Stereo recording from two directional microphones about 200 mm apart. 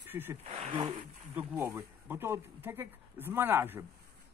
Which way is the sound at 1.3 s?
10° right (ahead or behind).